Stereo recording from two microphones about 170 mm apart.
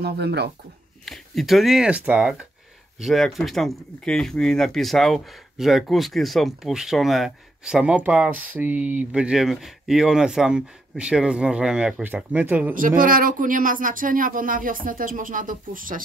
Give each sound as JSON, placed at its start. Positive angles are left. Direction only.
{"t": 0.0, "sound": "speech", "side_deg": -75}
{"t": 1.0, "sound": "speech", "side_deg": 0}
{"t": 12.7, "sound": "speech", "side_deg": -55}